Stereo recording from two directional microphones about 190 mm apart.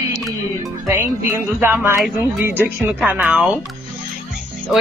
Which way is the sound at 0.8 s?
10° right (ahead or behind).